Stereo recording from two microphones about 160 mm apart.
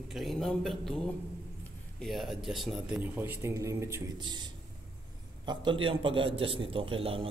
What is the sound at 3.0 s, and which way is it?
Speech, 15° right (ahead or behind).